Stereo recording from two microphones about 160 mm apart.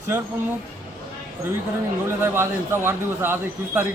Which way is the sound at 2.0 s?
15° right (ahead or behind).